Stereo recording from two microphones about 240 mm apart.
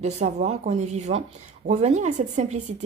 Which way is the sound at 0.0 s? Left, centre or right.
Right.